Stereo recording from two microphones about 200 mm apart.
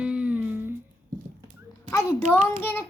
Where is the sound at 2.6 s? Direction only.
10° left (ahead or behind).